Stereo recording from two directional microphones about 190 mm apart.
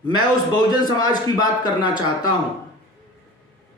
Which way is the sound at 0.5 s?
20° left (ahead or behind).